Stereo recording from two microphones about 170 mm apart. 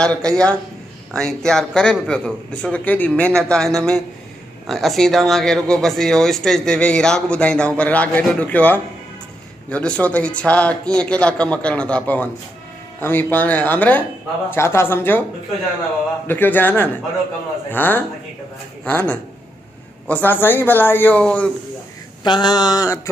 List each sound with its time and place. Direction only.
0.0 s speech: 5° left (ahead or behind)
16.3 s speech: 10° left (ahead or behind)
22.2 s a sound: 25° left (ahead or behind)